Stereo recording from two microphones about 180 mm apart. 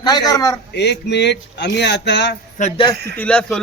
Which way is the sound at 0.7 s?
70° left (ahead or behind).